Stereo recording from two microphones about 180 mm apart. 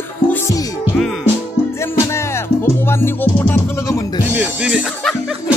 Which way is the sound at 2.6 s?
15° left (ahead or behind).